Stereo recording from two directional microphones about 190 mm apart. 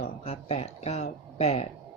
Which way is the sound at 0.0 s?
30° left (ahead or behind).